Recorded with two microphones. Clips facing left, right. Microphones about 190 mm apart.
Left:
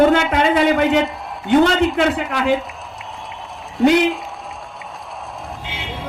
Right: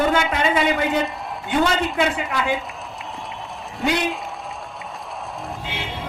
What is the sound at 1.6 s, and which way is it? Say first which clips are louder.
Speech: left 5 dB; 55° left (ahead or behind).